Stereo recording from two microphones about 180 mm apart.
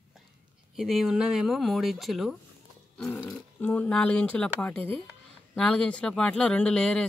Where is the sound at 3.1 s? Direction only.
20° left (ahead or behind).